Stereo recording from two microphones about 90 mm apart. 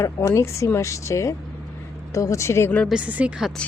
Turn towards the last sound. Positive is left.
turn(degrees=-15)  # may be behind; listen again after turning